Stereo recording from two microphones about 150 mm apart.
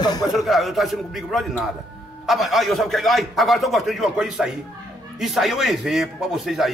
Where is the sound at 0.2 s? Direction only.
Centre (ahead or behind).